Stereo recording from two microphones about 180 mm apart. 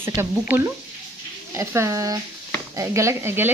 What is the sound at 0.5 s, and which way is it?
Speech, 10° right (ahead or behind).